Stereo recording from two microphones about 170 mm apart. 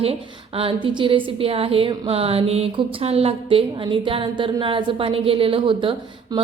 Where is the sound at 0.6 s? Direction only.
30° right (ahead or behind).